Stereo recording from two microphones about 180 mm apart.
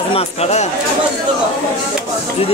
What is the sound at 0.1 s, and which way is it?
Speech, 35° left (ahead or behind).